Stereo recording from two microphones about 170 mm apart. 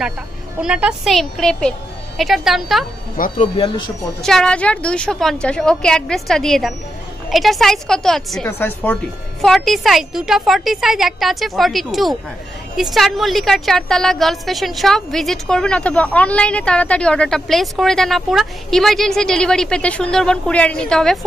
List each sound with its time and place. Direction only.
0.6 s a woman's voice: 5° right (ahead or behind)
3.2 s speech: 55° left (ahead or behind)
3.5 s speech: 30° left (ahead or behind)
4.2 s a woman's voice: 5° left (ahead or behind)
8.5 s a woman's voice: 15° left (ahead or behind)
9.4 s a woman's voice: centre (ahead or behind)